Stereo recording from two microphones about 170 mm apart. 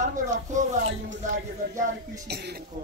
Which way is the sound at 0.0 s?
45° right (ahead or behind).